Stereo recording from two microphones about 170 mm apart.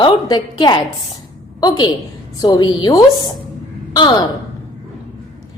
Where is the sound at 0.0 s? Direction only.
25° left (ahead or behind).